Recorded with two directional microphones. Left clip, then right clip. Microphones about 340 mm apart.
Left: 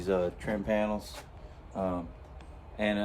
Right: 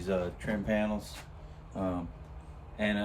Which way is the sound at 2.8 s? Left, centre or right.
Centre.